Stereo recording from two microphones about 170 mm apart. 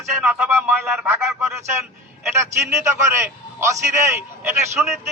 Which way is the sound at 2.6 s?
15° right (ahead or behind).